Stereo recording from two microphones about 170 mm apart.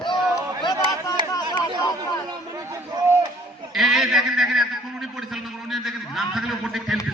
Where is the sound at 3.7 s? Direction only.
Centre (ahead or behind).